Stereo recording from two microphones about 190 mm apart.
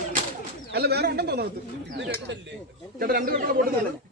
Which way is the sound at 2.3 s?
70° right (ahead or behind).